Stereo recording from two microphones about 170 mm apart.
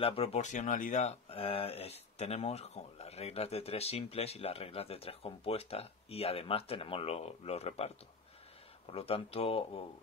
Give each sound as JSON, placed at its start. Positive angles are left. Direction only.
{"t": 0.0, "sound": "speech", "side_deg": 35}
{"t": 8.9, "sound": "speech", "side_deg": 35}